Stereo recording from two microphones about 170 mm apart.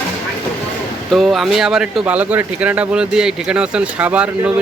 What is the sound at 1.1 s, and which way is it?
Speech, centre (ahead or behind).